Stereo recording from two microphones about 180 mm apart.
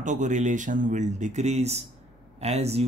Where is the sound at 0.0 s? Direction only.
45° right (ahead or behind).